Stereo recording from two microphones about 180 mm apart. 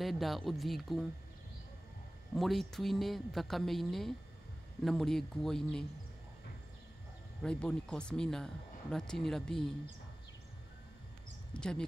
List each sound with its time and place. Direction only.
0.0 s speech: centre (ahead or behind)
2.3 s speech: centre (ahead or behind)
7.4 s speech: 5° left (ahead or behind)
11.5 s speech: 5° left (ahead or behind)